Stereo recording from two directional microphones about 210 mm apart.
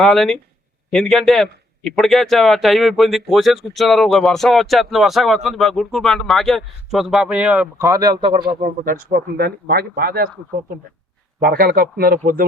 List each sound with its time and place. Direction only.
0.0 s a man's voice: centre (ahead or behind); by 8.5 s 20° right (ahead or behind)
8.6 s speech: 40° right (ahead or behind)
11.3 s speech: 45° right (ahead or behind)